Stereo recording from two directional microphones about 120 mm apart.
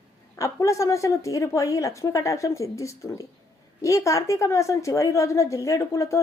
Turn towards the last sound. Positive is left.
turn(degrees=25)  # may be behind; listen again after turning